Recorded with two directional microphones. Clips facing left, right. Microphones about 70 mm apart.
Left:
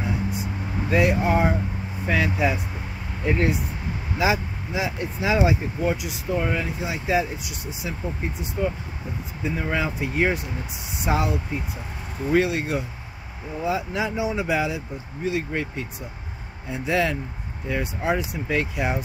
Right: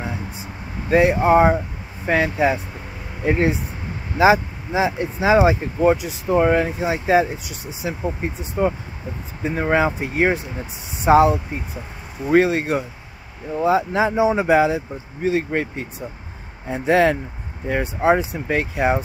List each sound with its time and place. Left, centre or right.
0.8 s speech: right
4.2 s speech: right
10.1 s speech: right